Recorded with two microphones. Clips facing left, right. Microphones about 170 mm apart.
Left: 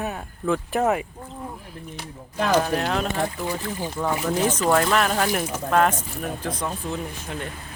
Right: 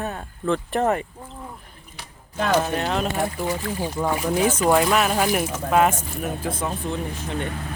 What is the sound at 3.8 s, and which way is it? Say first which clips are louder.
Speech: right 1 dB; 15° right (ahead or behind).